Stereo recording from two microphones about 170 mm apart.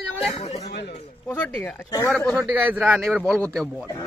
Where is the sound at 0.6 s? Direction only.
80° left.